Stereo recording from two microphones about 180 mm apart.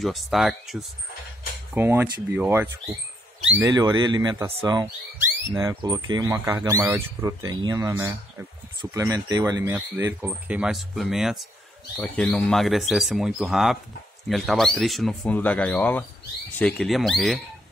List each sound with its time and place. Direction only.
0.0 s speech: centre (ahead or behind)
1.7 s speech: 10° right (ahead or behind)
12.0 s speech: 10° left (ahead or behind)